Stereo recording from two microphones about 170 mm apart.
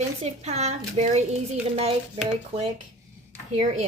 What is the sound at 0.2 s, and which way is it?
Speech, 40° right (ahead or behind).